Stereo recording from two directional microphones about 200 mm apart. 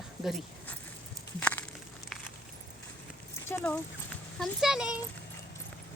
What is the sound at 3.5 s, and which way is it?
Speech, 5° left (ahead or behind).